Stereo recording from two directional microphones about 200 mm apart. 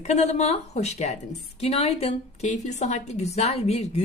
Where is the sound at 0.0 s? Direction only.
35° left (ahead or behind).